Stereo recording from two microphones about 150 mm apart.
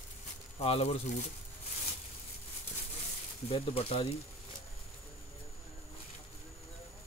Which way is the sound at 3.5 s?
40° left (ahead or behind).